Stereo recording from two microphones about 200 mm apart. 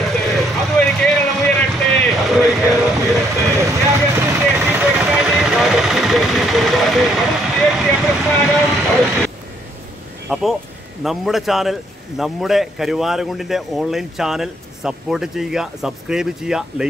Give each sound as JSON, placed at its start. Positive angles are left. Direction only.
{"t": 0.0, "sound": "vehicle", "side_deg": 0}
{"t": 3.4, "sound": "vehicle", "side_deg": -15}
{"t": 4.9, "sound": "vehicle", "side_deg": 0}
{"t": 10.3, "sound": "speech", "side_deg": -5}